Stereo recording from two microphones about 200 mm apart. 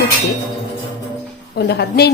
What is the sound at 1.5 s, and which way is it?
Speech, 55° left (ahead or behind).